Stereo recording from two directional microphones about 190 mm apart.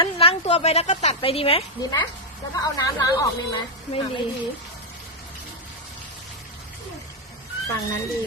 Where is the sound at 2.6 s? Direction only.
20° left (ahead or behind).